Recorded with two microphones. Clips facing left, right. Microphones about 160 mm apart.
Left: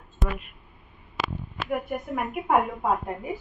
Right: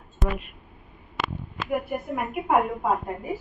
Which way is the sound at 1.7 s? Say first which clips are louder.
Right 1 dB; 5° right (ahead or behind).